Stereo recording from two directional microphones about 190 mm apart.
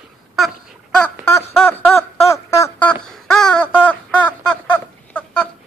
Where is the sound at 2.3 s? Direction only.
15° left (ahead or behind).